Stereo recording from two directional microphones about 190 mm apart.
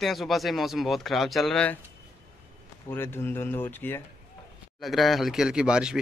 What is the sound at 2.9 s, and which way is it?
Speech, 10° left (ahead or behind).